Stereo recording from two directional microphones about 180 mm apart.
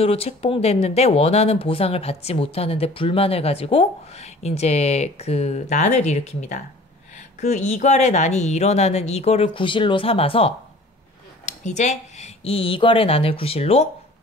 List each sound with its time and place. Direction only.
0.0 s speech: 35° left (ahead or behind)